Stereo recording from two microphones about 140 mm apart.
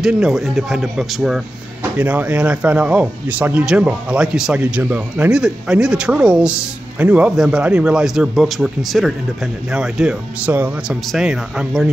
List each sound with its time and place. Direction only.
0.0 s speech: 5° right (ahead or behind)